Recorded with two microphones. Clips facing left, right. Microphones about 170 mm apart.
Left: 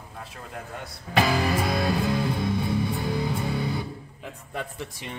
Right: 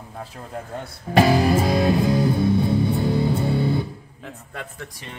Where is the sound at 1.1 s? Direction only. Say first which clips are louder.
Right 6 dB; 40° right (ahead or behind).